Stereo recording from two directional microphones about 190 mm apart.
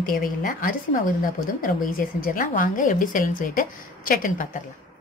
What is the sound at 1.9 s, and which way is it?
A woman's voice, 45° left (ahead or behind).